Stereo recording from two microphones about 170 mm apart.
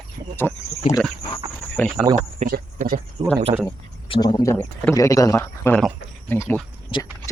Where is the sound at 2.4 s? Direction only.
55° right (ahead or behind).